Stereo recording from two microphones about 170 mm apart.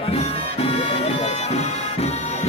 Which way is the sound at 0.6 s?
35° left (ahead or behind).